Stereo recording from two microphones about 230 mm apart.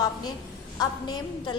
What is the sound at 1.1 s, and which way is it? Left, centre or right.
Speech, centre.